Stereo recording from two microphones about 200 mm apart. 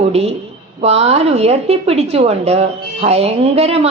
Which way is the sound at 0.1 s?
30° right (ahead or behind).